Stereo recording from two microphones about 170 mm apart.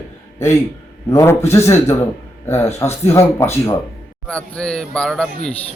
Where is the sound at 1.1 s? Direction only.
15° left (ahead or behind).